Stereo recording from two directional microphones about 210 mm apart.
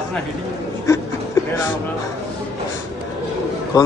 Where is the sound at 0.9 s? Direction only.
15° left (ahead or behind).